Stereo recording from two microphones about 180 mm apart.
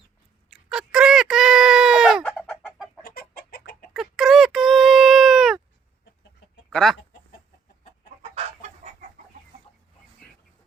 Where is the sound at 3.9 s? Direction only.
Centre (ahead or behind).